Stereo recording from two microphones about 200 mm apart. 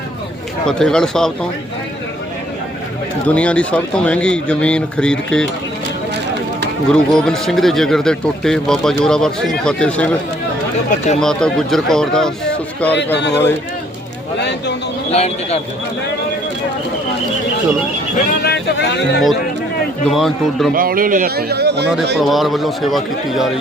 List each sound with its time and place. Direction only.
0.6 s a man's voice: 5° left (ahead or behind)
3.2 s a man's voice: 5° left (ahead or behind)
6.8 s a man's voice: 5° left (ahead or behind)
11.2 s a man's voice: 5° left (ahead or behind)
13.1 s speech: 60° left (ahead or behind)
14.3 s a sound: 60° left (ahead or behind)
15.1 s speech: 30° left (ahead or behind)
18.3 s music: 55° left (ahead or behind)
20.1 s a man's voice: centre (ahead or behind)
20.7 s a man's voice: 45° right (ahead or behind)
22.2 s a man's voice: centre (ahead or behind)